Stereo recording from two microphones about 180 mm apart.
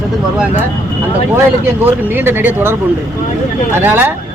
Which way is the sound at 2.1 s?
10° right (ahead or behind).